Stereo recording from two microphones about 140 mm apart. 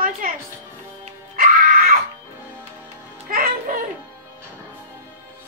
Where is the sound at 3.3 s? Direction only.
90° right.